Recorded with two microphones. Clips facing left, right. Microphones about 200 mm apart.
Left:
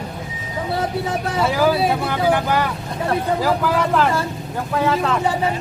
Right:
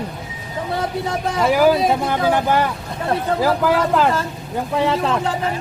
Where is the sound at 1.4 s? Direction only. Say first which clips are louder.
Right 4 dB; 10° right (ahead or behind).